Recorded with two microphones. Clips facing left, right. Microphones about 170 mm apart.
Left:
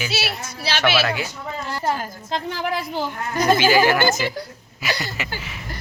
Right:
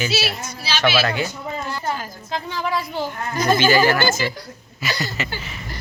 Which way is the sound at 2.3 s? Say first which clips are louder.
Even; 70° left (ahead or behind).